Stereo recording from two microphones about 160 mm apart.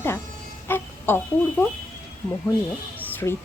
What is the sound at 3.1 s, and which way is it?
Music, 15° left (ahead or behind).